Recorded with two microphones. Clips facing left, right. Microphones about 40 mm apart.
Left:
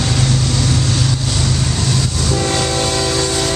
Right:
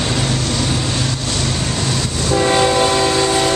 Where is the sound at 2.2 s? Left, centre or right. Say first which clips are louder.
Right 6 dB; centre.